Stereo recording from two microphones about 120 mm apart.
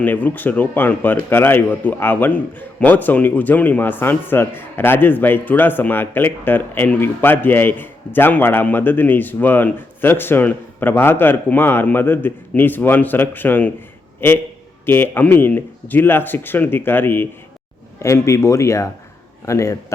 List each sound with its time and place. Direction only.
0.0 s a man's voice: 15° left (ahead or behind)